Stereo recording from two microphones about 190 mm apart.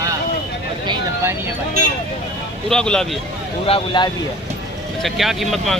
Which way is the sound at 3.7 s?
25° left (ahead or behind).